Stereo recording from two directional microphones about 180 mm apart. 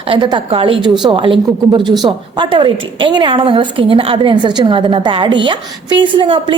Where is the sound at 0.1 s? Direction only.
25° right (ahead or behind).